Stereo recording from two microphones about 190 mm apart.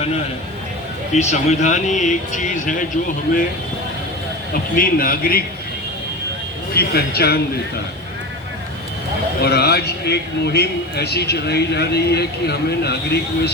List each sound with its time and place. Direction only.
1.1 s speech: 35° left (ahead or behind)
4.8 s a man's voice: 50° left (ahead or behind)
6.7 s a man's voice: 55° left (ahead or behind)
9.4 s a man's voice: 55° left (ahead or behind)